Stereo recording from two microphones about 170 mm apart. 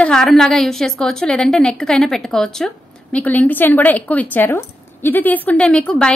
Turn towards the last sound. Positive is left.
turn(degrees=5)  # may be behind; listen again after turning